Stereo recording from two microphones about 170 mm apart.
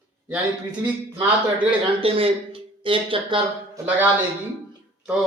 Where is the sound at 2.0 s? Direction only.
35° right (ahead or behind).